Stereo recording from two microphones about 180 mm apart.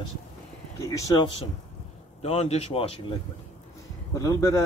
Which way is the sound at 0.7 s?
20° left (ahead or behind).